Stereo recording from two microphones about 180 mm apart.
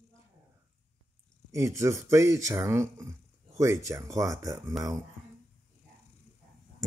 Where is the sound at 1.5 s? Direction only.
15° right (ahead or behind).